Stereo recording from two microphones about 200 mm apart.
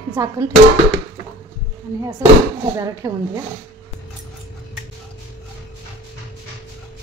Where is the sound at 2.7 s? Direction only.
15° right (ahead or behind).